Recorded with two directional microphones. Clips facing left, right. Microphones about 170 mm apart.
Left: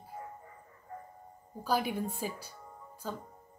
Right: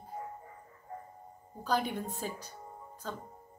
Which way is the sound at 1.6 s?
10° left (ahead or behind).